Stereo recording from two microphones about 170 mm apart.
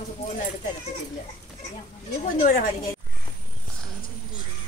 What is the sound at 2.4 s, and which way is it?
Speech, 50° left (ahead or behind).